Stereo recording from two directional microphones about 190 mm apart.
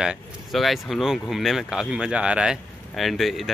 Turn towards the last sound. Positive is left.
turn(degrees=0)  # may be behind; listen again after turning